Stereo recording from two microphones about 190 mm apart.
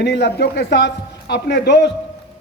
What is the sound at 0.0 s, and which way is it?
Speech, 65° left (ahead or behind).